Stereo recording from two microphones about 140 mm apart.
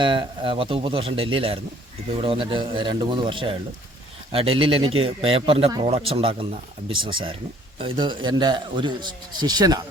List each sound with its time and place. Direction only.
0.0 s a man's voice: 35° right (ahead or behind)